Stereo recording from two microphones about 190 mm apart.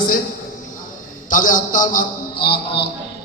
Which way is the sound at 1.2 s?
45° left (ahead or behind).